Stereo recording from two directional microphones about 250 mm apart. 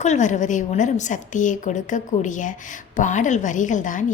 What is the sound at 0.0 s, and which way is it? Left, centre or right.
A woman's voice, left.